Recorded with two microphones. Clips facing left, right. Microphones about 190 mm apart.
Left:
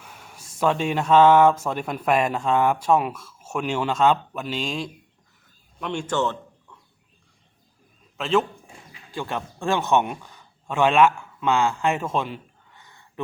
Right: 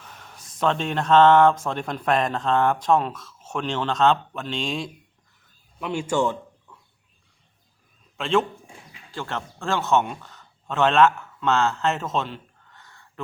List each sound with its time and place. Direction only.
0.0 s a sound: 10° left (ahead or behind)
0.6 s a man's voice: 10° left (ahead or behind); by 6.7 s 10° right (ahead or behind)
8.2 s a man's voice: 5° left (ahead or behind)
9.1 s a man's voice: 15° left (ahead or behind)